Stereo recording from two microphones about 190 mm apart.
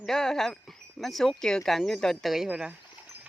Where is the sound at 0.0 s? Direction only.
5° left (ahead or behind).